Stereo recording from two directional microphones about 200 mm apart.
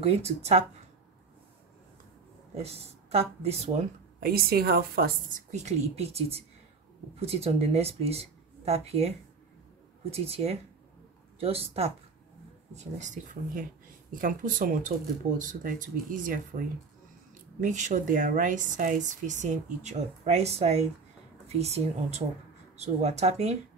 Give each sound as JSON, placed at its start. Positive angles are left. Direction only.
{"t": 0.0, "sound": "speech", "side_deg": -30}
{"t": 2.5, "sound": "speech", "side_deg": -30}
{"t": 4.2, "sound": "speech", "side_deg": -50}
{"t": 5.5, "sound": "speech", "side_deg": -35}
{"t": 10.1, "sound": "speech", "side_deg": -30}